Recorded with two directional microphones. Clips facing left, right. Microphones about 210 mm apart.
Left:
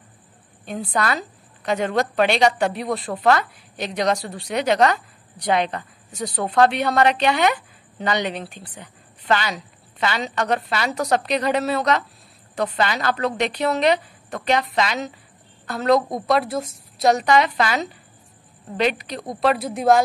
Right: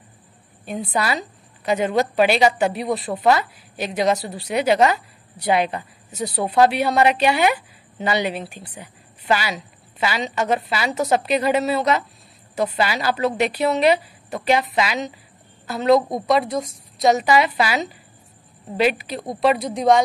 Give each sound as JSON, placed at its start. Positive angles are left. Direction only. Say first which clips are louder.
{"t": 0.9, "sound": "a woman's voice", "louder": "even", "side_deg": -5}